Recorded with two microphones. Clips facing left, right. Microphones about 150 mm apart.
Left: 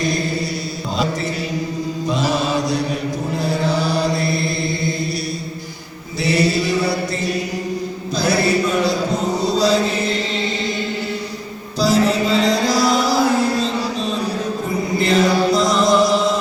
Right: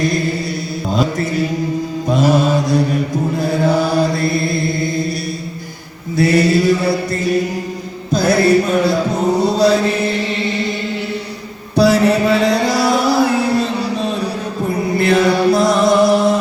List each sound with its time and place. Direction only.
0.9 s mantra: 50° right (ahead or behind)
6.1 s mantra: 50° right (ahead or behind)
8.1 s music: 50° right (ahead or behind)
9.4 s chant: 60° right (ahead or behind)
11.8 s music: 60° right (ahead or behind)
14.9 s chant: 60° right (ahead or behind)